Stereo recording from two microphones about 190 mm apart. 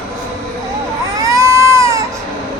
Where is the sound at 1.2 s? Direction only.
15° right (ahead or behind).